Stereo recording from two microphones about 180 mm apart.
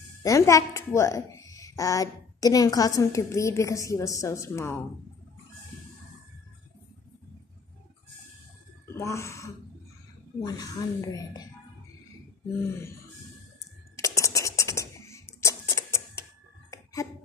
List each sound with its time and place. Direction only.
0.2 s a woman's voice: 20° left (ahead or behind)
8.9 s speech: 15° left (ahead or behind)
13.9 s scratch: 15° left (ahead or behind)
16.7 s a sound: 15° left (ahead or behind)